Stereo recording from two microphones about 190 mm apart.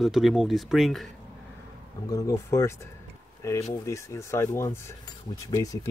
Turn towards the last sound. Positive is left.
turn(degrees=20)  # may be behind; listen again after turning